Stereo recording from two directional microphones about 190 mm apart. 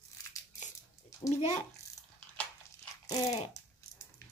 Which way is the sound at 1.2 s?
35° left (ahead or behind).